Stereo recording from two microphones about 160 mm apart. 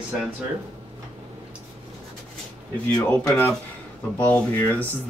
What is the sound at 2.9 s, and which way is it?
Speech, 15° left (ahead or behind).